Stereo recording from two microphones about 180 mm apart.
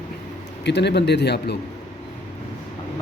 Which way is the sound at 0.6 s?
70° left (ahead or behind).